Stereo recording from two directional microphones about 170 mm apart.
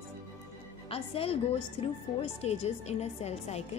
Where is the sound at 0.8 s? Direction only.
35° left (ahead or behind).